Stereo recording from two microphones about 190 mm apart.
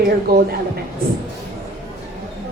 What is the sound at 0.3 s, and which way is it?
Speech, 55° right (ahead or behind).